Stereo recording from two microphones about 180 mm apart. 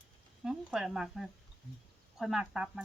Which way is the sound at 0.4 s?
5° right (ahead or behind).